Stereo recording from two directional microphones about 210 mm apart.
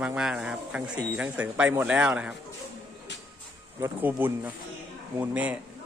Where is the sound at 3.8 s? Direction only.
10° right (ahead or behind).